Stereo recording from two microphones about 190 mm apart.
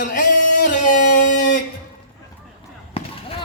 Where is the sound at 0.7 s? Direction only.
40° left (ahead or behind).